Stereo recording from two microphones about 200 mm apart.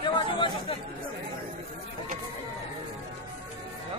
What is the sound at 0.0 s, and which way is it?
Chatter, 25° left (ahead or behind).